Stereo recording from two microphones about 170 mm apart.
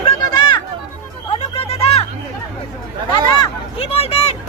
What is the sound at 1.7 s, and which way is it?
Chatter, 35° left (ahead or behind).